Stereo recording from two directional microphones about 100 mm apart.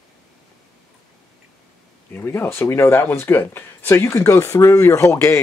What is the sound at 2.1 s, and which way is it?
Speech, 25° left (ahead or behind).